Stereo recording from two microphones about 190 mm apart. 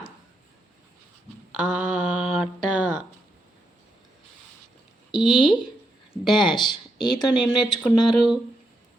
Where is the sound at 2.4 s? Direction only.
Centre (ahead or behind).